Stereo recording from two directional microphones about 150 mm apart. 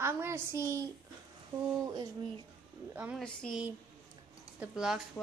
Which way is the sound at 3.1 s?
5° left (ahead or behind).